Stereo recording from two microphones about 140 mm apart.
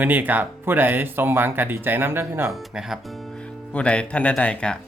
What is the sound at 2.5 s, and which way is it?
Speech, centre (ahead or behind).